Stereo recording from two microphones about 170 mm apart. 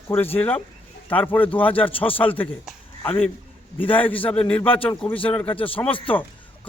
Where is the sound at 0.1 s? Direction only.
10° left (ahead or behind).